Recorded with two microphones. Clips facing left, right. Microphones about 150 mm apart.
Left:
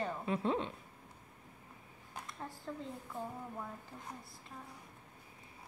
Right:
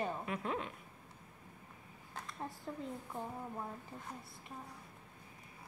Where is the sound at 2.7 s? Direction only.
15° right (ahead or behind).